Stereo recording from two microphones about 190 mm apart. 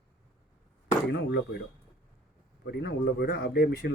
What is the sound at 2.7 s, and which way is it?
Speech, 60° left (ahead or behind).